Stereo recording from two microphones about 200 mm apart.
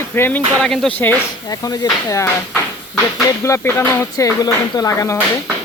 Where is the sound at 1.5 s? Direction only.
15° left (ahead or behind).